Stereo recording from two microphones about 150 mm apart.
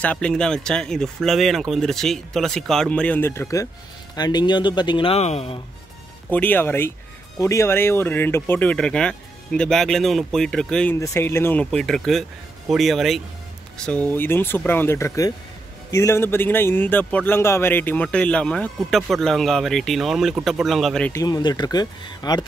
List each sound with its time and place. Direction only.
0.0 s speech: 10° left (ahead or behind); by 5.6 s 45° left (ahead or behind)
6.3 s a man's voice: 10° left (ahead or behind)
21.1 s speech: 25° left (ahead or behind)